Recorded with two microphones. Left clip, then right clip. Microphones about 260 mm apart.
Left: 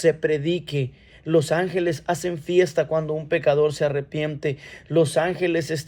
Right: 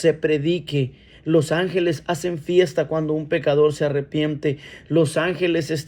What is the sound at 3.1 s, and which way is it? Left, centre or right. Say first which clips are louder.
Speech: even; left.